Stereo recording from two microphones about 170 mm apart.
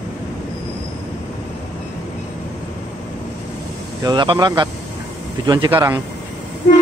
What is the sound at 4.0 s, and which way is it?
Speech, 25° right (ahead or behind).